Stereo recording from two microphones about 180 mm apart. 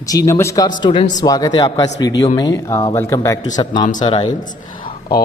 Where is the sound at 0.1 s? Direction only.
20° left (ahead or behind).